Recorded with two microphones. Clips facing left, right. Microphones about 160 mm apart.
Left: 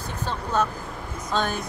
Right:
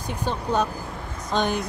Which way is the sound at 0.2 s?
15° right (ahead or behind).